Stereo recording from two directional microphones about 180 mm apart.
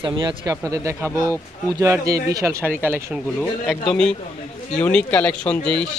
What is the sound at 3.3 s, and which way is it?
Speech, 5° left (ahead or behind).